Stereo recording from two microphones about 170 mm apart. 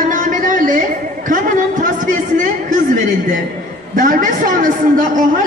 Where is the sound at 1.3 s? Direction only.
50° right (ahead or behind).